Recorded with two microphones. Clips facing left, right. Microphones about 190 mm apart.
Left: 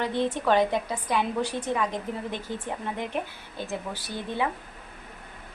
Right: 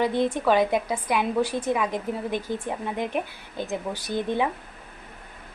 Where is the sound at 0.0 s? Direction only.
10° right (ahead or behind).